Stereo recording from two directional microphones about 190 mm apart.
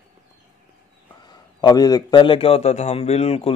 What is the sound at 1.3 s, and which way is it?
A man's voice, 20° left (ahead or behind).